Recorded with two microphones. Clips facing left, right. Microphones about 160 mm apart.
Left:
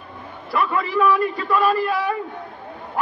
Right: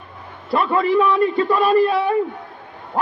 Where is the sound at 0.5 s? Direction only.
30° right (ahead or behind).